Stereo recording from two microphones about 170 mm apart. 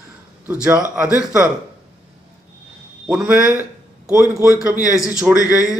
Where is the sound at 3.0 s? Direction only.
10° right (ahead or behind).